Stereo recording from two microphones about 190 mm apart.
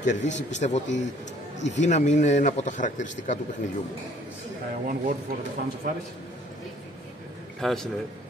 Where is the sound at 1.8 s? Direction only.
40° left (ahead or behind).